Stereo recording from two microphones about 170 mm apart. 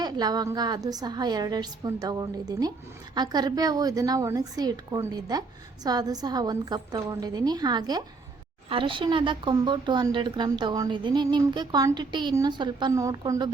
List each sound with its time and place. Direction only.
0.0 s a woman's voice: 25° right (ahead or behind)